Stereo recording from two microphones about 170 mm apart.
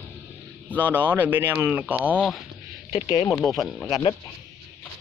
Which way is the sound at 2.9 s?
25° left (ahead or behind).